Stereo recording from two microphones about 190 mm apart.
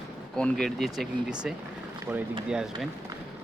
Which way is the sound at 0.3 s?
5° left (ahead or behind).